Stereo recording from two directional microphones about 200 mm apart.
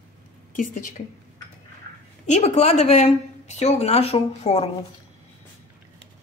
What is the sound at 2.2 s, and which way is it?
Speech, 35° left (ahead or behind).